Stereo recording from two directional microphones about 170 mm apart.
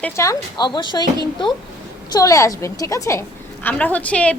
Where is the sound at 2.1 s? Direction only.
20° left (ahead or behind).